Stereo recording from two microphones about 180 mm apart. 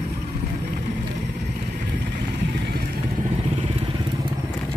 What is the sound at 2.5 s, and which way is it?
Vehicle, 65° right (ahead or behind).